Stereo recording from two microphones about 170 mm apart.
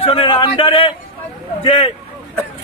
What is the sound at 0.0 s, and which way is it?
A man's voice, 30° left (ahead or behind).